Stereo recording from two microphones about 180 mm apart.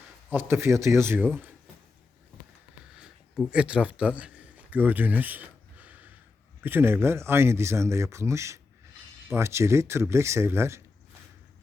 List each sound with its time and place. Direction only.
0.3 s speech: 10° right (ahead or behind)
3.0 s a sound: 5° right (ahead or behind)
6.6 s speech: 10° right (ahead or behind)